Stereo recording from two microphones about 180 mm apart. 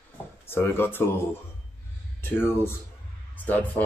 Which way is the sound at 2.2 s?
10° left (ahead or behind).